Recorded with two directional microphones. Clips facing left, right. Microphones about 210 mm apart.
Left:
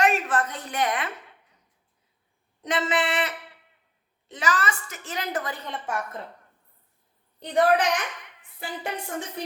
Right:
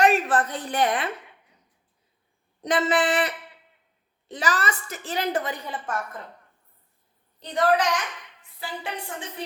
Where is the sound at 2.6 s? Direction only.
35° right (ahead or behind).